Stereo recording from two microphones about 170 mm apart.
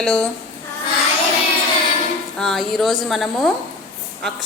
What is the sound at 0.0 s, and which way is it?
Speech, 5° left (ahead or behind).